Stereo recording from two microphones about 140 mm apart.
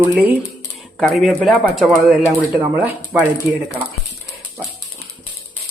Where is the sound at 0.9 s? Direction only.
Centre (ahead or behind).